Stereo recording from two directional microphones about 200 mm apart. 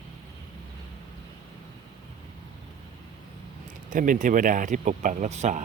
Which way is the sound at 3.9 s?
40° right (ahead or behind).